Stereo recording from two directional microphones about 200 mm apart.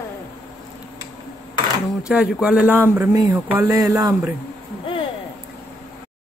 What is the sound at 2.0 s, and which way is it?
A man's voice, 5° right (ahead or behind).